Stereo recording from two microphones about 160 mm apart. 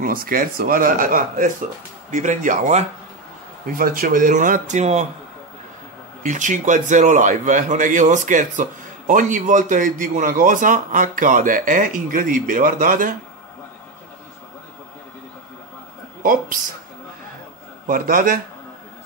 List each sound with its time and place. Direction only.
0.0 s a man's voice: 65° right (ahead or behind)
3.7 s a man's voice: 65° right (ahead or behind); by 5.0 s 45° right (ahead or behind)
6.2 s a man's voice: 50° right (ahead or behind)
16.2 s a man's voice: 60° right (ahead or behind)
17.8 s a man's voice: 60° right (ahead or behind)